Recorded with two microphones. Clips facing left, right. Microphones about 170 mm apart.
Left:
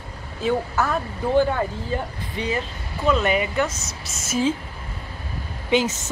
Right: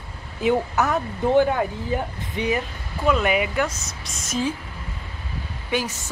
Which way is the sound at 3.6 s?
5° left (ahead or behind).